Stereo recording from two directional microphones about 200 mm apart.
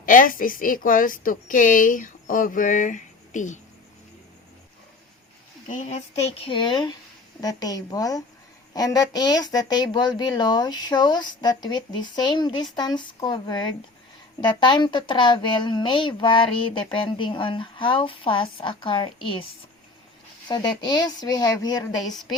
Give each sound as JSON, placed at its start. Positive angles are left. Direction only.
{"t": 0.0, "sound": "a woman's voice", "side_deg": 40}
{"t": 5.6, "sound": "a woman's voice", "side_deg": 35}
{"t": 20.5, "sound": "a woman's voice", "side_deg": 20}
{"t": 22.1, "sound": "a woman's voice", "side_deg": 0}